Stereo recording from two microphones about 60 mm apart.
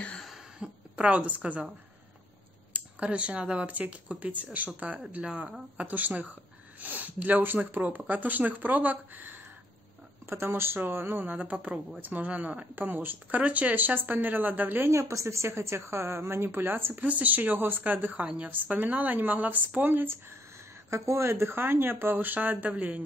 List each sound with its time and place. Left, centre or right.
0.6 s a woman's voice: right
2.7 s speech: right
5.8 s speech: right
10.2 s speech: right
14.9 s a woman's voice: right
20.9 s speech: right